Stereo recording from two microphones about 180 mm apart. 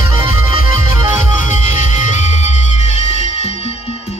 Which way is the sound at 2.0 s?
40° left (ahead or behind).